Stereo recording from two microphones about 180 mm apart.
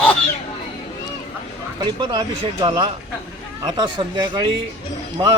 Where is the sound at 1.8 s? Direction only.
25° right (ahead or behind).